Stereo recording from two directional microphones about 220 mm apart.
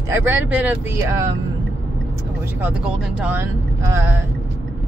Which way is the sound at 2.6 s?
5° right (ahead or behind).